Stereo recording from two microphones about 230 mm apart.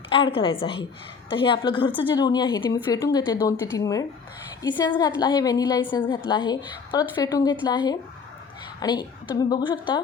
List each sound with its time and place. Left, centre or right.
0.1 s a woman's voice: left